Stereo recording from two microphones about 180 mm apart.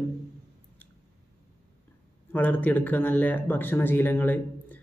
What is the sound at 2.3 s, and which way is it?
A man's voice, 10° left (ahead or behind).